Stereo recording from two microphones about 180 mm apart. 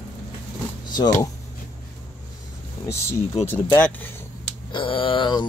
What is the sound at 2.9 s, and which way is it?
Speech, 15° left (ahead or behind).